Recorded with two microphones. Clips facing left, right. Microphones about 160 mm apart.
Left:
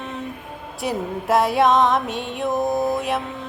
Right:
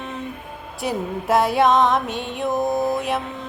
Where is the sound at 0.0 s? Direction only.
Centre (ahead or behind).